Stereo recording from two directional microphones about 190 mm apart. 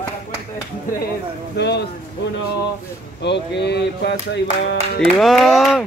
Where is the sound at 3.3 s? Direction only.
60° left (ahead or behind).